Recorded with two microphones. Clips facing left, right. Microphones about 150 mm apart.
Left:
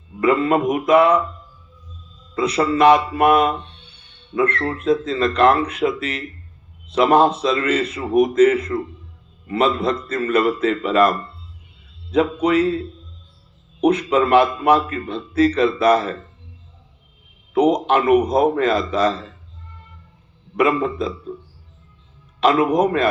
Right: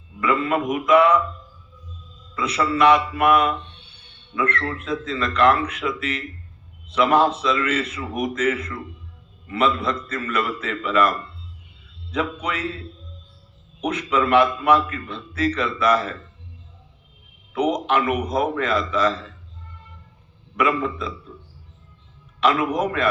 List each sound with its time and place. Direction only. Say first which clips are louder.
0.2 s a man's voice: left 5 dB; 35° left (ahead or behind)
2.3 s a man's voice: left 4 dB; 40° left (ahead or behind)
12.1 s a man's voice: left 9 dB; 35° left (ahead or behind)
13.8 s a man's voice: left 6 dB; 40° left (ahead or behind)
17.5 s a man's voice: left 5 dB; 40° left (ahead or behind)
20.6 s a man's voice: left 4 dB; 35° left (ahead or behind)
22.4 s a man's voice: left 5 dB; 35° left (ahead or behind)